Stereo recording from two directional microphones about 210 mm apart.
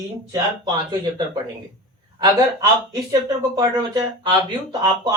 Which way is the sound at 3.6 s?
20° right (ahead or behind).